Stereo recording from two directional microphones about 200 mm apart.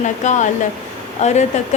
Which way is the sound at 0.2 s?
35° left (ahead or behind).